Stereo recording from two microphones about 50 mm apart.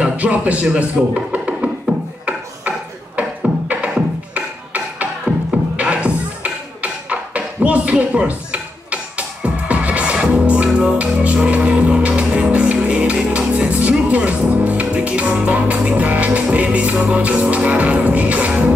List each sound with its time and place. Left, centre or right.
0.0 s speech: right
3.2 s beatboxing: right
4.3 s music: right